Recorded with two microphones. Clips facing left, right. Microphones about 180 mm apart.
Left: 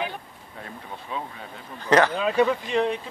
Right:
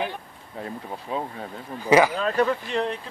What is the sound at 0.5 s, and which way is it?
Speech, 35° right (ahead or behind).